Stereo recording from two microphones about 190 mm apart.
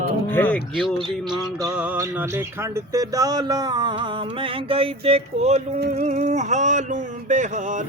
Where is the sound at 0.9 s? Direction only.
25° right (ahead or behind).